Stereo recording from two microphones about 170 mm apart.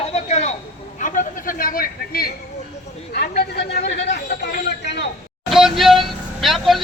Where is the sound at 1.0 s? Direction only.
50° left (ahead or behind).